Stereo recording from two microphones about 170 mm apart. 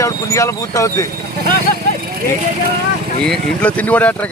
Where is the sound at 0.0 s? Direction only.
15° left (ahead or behind).